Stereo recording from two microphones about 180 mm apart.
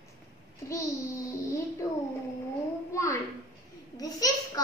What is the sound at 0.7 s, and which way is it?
Speech, 15° left (ahead or behind).